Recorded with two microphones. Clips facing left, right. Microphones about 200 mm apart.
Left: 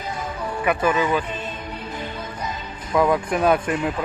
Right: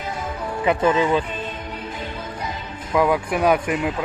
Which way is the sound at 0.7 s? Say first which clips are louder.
Right 2 dB; 25° right (ahead or behind).